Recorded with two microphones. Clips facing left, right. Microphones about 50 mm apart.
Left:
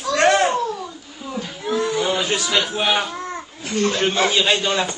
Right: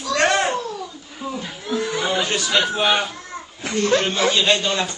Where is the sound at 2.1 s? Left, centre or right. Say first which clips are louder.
Even; centre.